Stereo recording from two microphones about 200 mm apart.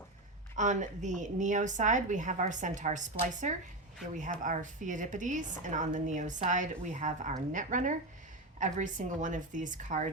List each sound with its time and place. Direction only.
0.5 s a woman's voice: 40° right (ahead or behind)